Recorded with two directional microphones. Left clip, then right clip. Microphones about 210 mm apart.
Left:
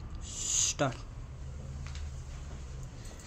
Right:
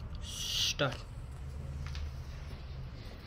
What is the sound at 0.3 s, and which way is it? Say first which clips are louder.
Owl: even; 35° left (ahead or behind).